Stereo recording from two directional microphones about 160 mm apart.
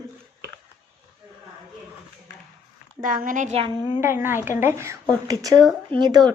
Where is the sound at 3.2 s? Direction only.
50° right (ahead or behind).